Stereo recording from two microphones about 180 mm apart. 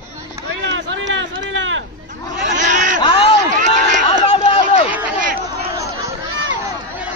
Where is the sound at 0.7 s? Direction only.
90° right.